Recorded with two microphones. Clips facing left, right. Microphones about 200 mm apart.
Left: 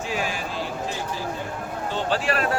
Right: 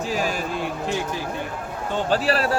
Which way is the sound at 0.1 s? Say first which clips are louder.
Right 3 dB; 40° right (ahead or behind).